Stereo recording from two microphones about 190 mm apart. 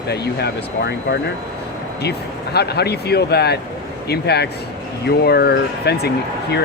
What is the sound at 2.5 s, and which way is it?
Speech, 60° left (ahead or behind).